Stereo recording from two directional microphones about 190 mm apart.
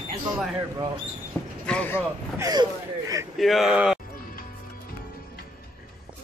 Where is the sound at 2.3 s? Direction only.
20° right (ahead or behind).